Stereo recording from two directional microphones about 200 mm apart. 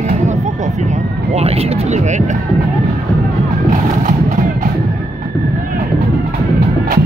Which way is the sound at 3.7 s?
40° right (ahead or behind).